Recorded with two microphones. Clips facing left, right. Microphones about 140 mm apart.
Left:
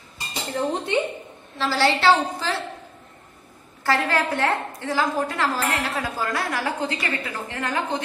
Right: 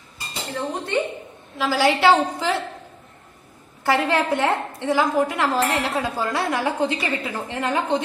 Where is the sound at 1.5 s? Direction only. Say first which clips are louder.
Right 2 dB; 10° right (ahead or behind).